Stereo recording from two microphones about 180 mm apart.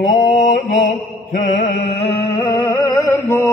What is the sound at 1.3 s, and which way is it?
Music, 45° left (ahead or behind).